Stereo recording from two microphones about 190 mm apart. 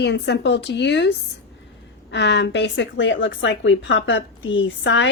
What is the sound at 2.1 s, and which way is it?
A woman's voice, 65° left (ahead or behind).